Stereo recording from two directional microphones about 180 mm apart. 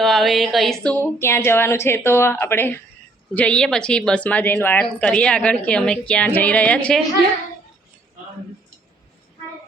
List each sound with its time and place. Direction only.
0.0 s speech: centre (ahead or behind)
1.0 s speech: 15° left (ahead or behind)